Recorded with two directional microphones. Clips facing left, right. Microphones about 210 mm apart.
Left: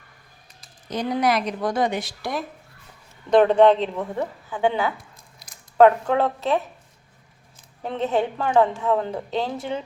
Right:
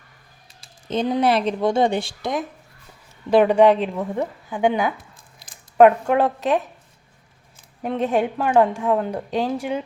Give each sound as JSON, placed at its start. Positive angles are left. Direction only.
{"t": 0.9, "sound": "speech", "side_deg": -25}
{"t": 3.2, "sound": "a woman's voice", "side_deg": -10}
{"t": 5.4, "sound": "squish", "side_deg": -25}
{"t": 5.7, "sound": "a woman's voice", "side_deg": -15}
{"t": 7.8, "sound": "a woman's voice", "side_deg": -10}